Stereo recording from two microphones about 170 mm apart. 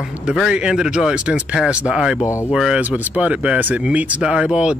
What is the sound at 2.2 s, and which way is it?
Speech, 15° left (ahead or behind).